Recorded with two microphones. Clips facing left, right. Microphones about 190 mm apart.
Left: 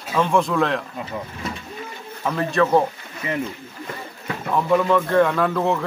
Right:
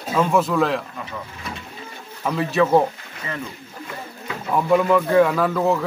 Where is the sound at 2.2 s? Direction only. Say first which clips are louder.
Right 1 dB; 5° right (ahead or behind).